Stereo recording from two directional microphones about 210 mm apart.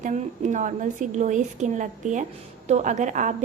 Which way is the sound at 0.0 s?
35° right (ahead or behind).